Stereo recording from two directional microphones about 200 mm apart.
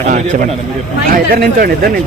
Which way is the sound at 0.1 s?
40° right (ahead or behind).